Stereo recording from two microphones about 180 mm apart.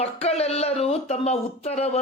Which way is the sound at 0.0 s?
35° left (ahead or behind).